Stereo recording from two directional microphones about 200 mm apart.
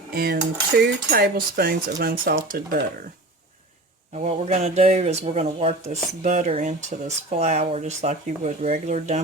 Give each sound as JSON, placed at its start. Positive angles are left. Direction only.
{"t": 0.1, "sound": "cutlery", "side_deg": -50}
{"t": 0.8, "sound": "speech", "side_deg": -50}
{"t": 4.2, "sound": "speech", "side_deg": -35}